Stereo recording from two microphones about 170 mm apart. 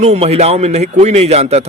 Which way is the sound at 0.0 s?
40° right (ahead or behind).